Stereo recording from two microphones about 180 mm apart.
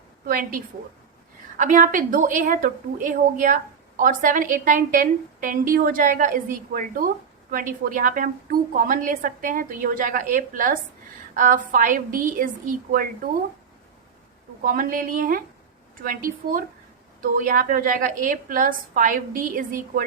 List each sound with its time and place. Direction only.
0.3 s a woman's voice: 50° right (ahead or behind)
14.7 s a woman's voice: 50° right (ahead or behind)